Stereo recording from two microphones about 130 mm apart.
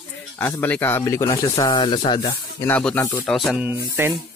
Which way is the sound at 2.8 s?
5° left (ahead or behind).